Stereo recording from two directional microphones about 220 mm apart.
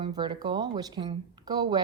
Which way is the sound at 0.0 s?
20° right (ahead or behind).